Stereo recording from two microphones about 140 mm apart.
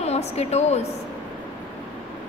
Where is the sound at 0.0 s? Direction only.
50° left (ahead or behind).